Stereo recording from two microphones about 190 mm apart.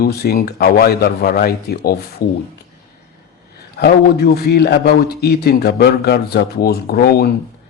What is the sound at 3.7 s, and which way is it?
Speech, 55° left (ahead or behind).